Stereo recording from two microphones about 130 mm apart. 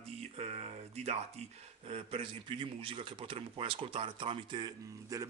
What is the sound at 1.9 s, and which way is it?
A man's voice, 50° right (ahead or behind).